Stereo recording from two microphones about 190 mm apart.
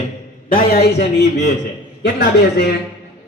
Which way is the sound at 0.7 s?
60° left (ahead or behind).